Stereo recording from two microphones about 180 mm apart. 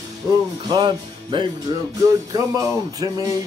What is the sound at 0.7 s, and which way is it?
Music, 25° right (ahead or behind).